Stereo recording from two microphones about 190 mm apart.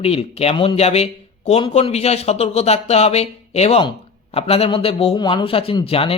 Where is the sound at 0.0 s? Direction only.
30° left (ahead or behind).